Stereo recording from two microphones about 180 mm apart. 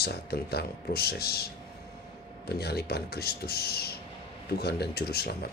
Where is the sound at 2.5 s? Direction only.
65° left (ahead or behind).